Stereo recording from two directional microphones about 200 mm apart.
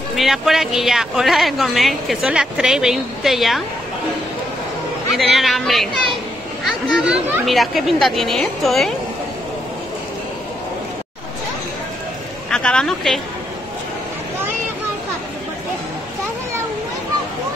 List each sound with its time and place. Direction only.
0.1 s speech: centre (ahead or behind)
5.1 s speech: centre (ahead or behind)
12.4 s speech: 5° left (ahead or behind)